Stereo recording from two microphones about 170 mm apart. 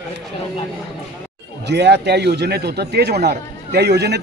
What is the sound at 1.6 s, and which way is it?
A man's voice, 80° right.